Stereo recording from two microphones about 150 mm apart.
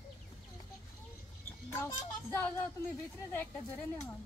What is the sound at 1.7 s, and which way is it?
Speech, 15° left (ahead or behind).